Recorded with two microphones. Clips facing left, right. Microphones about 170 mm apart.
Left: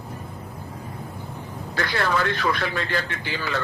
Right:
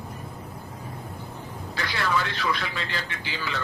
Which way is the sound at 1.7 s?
50° left (ahead or behind).